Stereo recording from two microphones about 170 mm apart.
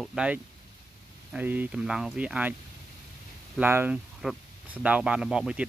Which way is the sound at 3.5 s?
10° right (ahead or behind).